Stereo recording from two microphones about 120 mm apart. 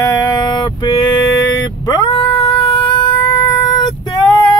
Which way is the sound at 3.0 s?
35° left (ahead or behind).